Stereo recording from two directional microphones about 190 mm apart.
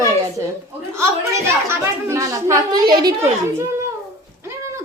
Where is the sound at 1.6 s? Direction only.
15° right (ahead or behind).